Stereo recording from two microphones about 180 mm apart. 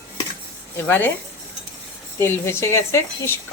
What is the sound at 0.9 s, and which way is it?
Speech, 10° left (ahead or behind).